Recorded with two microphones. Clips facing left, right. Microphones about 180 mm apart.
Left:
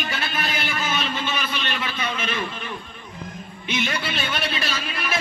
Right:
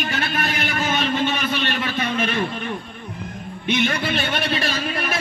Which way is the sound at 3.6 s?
50° right (ahead or behind).